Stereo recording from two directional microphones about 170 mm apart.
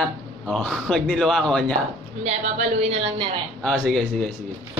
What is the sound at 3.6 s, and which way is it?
Speech, centre (ahead or behind).